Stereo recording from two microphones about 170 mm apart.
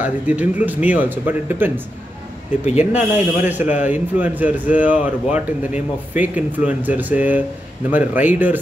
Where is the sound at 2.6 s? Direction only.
45° left (ahead or behind).